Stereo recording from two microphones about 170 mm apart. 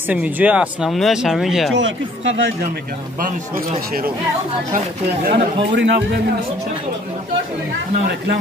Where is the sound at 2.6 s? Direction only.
60° right (ahead or behind).